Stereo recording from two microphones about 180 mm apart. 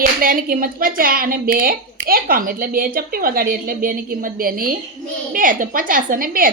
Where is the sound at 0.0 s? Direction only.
50° right (ahead or behind).